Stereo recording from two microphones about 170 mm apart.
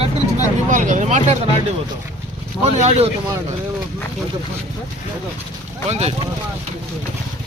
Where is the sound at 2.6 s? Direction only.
40° right (ahead or behind).